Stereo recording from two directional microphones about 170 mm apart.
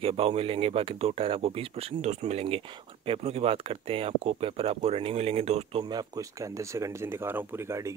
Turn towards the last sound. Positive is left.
turn(degrees=-15)  # may be behind; listen again after turning